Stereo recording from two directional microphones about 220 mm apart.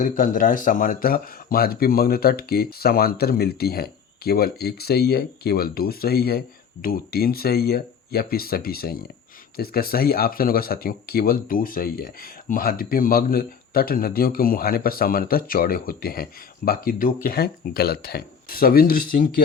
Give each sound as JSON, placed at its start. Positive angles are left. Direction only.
{"t": 0.0, "sound": "a man's voice", "side_deg": 40}